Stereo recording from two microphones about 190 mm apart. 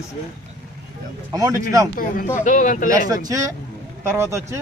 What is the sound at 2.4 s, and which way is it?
Speech, 40° left (ahead or behind).